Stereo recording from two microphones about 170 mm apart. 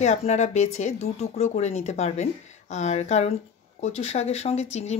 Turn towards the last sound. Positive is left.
turn(degrees=40)  # may be behind; listen again after turning